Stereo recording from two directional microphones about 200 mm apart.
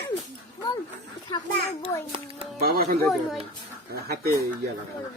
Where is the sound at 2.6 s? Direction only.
50° right (ahead or behind).